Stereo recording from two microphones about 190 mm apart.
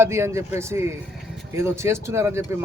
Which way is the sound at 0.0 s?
15° right (ahead or behind).